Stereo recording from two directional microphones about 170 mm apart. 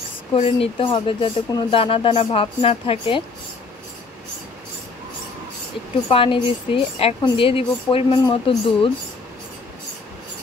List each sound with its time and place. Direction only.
0.4 s speech: 30° left (ahead or behind)
6.0 s speech: 30° left (ahead or behind)